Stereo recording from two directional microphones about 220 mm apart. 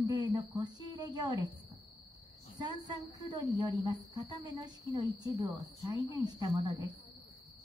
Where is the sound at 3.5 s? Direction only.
15° right (ahead or behind).